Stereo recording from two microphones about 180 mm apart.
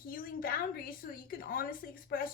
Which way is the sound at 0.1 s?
50° left (ahead or behind).